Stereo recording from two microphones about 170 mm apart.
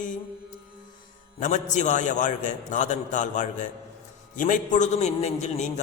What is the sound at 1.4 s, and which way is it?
A man's voice, 45° left (ahead or behind).